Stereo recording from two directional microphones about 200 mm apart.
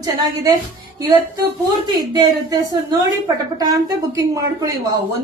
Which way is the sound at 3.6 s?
15° right (ahead or behind).